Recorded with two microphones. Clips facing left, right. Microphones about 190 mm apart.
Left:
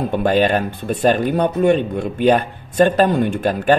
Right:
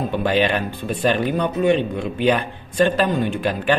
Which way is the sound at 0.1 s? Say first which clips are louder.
Left 4 dB; 50° left (ahead or behind).